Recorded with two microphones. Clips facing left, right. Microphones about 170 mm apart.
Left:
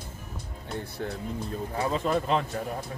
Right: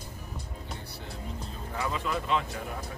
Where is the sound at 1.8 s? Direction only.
40° left (ahead or behind).